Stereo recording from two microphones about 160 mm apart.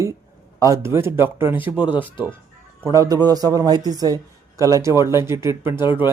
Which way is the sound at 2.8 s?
20° right (ahead or behind).